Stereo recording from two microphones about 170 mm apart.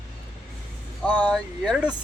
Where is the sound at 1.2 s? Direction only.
5° left (ahead or behind).